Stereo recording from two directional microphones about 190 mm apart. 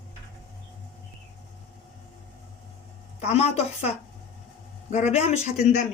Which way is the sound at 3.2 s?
35° left (ahead or behind).